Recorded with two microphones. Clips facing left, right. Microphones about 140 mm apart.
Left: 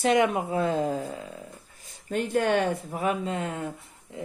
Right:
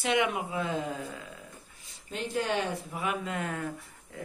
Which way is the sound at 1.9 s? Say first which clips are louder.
Left 8 dB; 50° left (ahead or behind).